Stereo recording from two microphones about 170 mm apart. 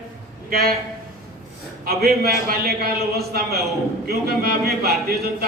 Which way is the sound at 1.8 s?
60° right (ahead or behind).